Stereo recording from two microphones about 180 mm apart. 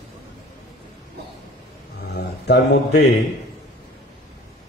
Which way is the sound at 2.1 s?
70° left (ahead or behind).